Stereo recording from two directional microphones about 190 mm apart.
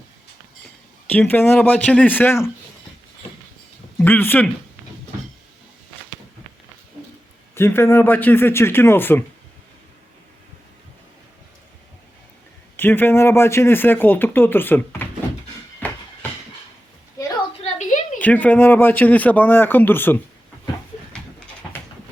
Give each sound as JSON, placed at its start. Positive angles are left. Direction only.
{"t": 1.1, "sound": "speech", "side_deg": 10}
{"t": 3.9, "sound": "speech", "side_deg": 10}
{"t": 7.5, "sound": "speech", "side_deg": 15}
{"t": 12.7, "sound": "speech", "side_deg": 10}
{"t": 15.8, "sound": "a sound", "side_deg": 10}
{"t": 17.6, "sound": "a sound", "side_deg": 40}
{"t": 18.2, "sound": "speech", "side_deg": 10}